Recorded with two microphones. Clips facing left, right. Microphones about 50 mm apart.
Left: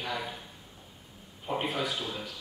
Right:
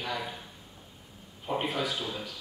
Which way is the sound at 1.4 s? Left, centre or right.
Centre.